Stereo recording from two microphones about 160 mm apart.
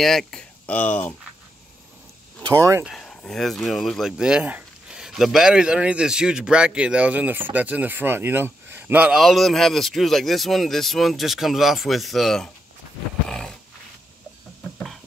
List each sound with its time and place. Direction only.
0.0 s speech: centre (ahead or behind)
2.4 s speech: 15° right (ahead or behind)
2.8 s a man's voice: 5° left (ahead or behind)
13.3 s dog: 5° left (ahead or behind)